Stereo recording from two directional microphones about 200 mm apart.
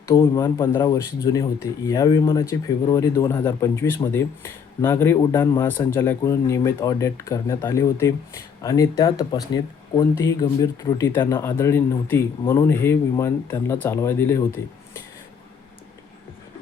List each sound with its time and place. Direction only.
0.0 s speech: 15° left (ahead or behind)